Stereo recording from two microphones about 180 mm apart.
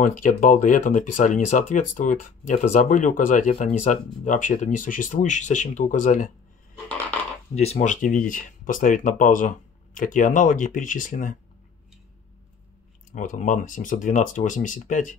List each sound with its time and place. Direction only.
0.0 s speech: 45° left (ahead or behind)
7.5 s speech: 35° left (ahead or behind)
13.1 s speech: 45° left (ahead or behind)